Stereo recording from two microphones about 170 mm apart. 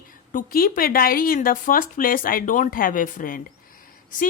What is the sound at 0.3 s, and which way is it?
A woman's voice, 55° left (ahead or behind).